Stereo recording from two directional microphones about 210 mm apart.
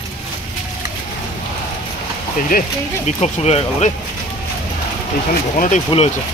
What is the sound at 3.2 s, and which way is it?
Speech, 30° left (ahead or behind).